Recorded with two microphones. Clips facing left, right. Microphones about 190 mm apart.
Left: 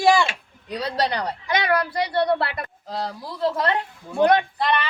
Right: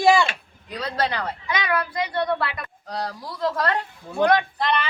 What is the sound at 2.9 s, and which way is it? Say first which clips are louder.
Speech: even; 5° left (ahead or behind).